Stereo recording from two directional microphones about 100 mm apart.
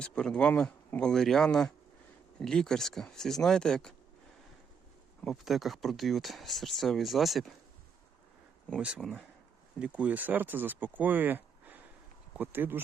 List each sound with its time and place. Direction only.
0.0 s speech: 10° left (ahead or behind)
5.2 s speech: centre (ahead or behind)
9.0 s speech: 5° left (ahead or behind)
9.7 s speech: 10° right (ahead or behind)